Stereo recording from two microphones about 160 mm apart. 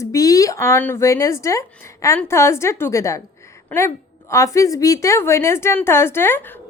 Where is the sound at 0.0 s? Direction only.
20° left (ahead or behind).